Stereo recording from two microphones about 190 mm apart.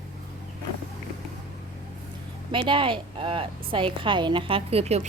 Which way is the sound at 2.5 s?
25° right (ahead or behind).